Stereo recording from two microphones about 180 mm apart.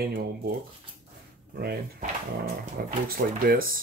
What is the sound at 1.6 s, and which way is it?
Speech, 55° right (ahead or behind).